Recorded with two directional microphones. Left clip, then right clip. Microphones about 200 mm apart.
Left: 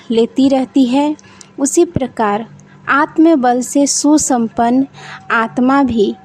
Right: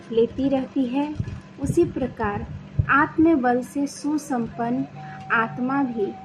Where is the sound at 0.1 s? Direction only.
65° left (ahead or behind).